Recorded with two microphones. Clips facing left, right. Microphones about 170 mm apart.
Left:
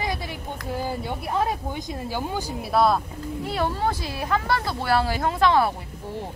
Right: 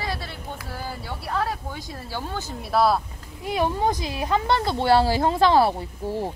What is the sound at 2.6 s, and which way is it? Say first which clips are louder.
Speech: even; centre (ahead or behind).